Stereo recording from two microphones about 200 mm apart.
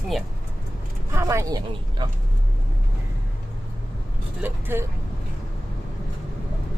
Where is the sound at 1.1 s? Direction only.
15° right (ahead or behind).